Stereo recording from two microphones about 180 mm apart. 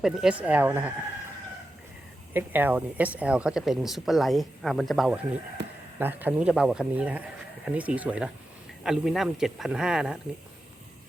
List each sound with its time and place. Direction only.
0.0 s a man's voice: 5° right (ahead or behind)
2.3 s speech: 10° right (ahead or behind)
5.6 s speech: 70° right (ahead or behind)
6.0 s a man's voice: 10° right (ahead or behind)